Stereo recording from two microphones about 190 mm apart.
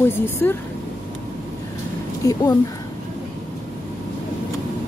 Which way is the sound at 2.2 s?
15° left (ahead or behind).